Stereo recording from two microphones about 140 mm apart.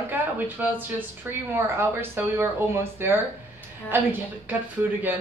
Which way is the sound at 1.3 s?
15° right (ahead or behind).